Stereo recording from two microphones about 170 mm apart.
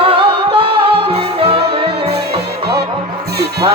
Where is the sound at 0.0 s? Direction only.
30° right (ahead or behind).